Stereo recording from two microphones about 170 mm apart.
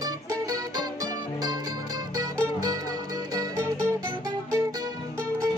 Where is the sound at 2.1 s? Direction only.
20° right (ahead or behind).